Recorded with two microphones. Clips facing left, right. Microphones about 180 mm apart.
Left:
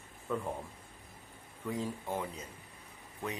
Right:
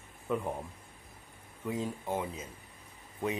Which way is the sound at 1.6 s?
20° right (ahead or behind).